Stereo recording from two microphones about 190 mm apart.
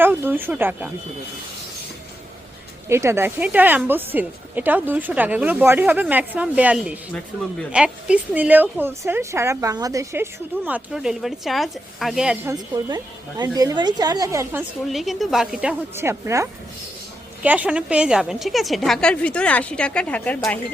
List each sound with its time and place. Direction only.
0.0 s a woman's voice: 10° right (ahead or behind)
2.9 s a woman's voice: 15° right (ahead or behind)
10.7 s a woman's voice: 5° right (ahead or behind)
12.5 s a woman's voice: 20° right (ahead or behind)
14.8 s a woman's voice: centre (ahead or behind)
16.0 s a woman's voice: 15° right (ahead or behind); by 20.7 s 10° left (ahead or behind)